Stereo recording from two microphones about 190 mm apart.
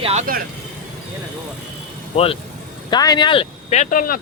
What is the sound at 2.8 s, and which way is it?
Speech, 20° left (ahead or behind).